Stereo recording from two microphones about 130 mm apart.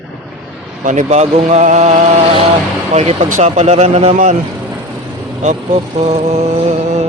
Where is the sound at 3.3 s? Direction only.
60° right (ahead or behind).